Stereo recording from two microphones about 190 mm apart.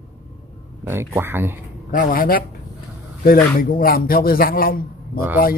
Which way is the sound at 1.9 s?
45° left (ahead or behind).